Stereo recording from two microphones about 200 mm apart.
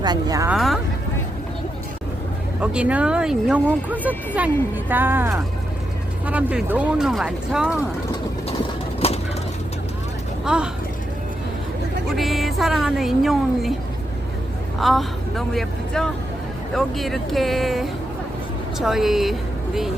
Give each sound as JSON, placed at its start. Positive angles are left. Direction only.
{"t": 0.0, "sound": "speech", "side_deg": -20}
{"t": 0.5, "sound": "a sound", "side_deg": 0}
{"t": 2.6, "sound": "a woman's voice", "side_deg": -5}
{"t": 9.0, "sound": "vehicle", "side_deg": 30}
{"t": 10.4, "sound": "speech", "side_deg": -5}
{"t": 12.1, "sound": "a woman's voice", "side_deg": 0}
{"t": 14.8, "sound": "a woman's voice", "side_deg": 0}